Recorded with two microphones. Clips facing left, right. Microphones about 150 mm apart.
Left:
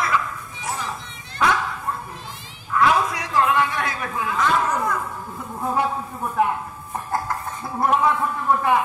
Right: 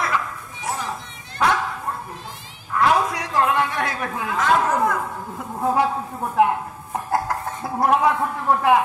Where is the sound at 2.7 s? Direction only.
55° right (ahead or behind); by 5.0 s 75° right (ahead or behind).